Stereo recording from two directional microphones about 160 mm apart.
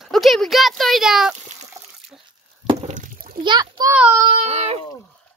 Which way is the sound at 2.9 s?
55° right (ahead or behind).